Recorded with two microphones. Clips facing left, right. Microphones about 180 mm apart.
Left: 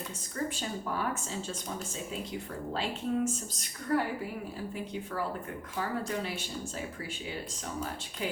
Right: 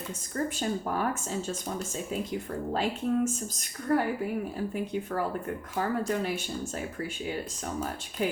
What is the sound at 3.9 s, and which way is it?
Speech, 45° right (ahead or behind).